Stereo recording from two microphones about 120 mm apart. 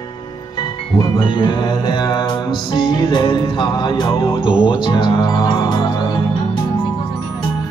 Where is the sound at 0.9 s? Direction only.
40° left (ahead or behind).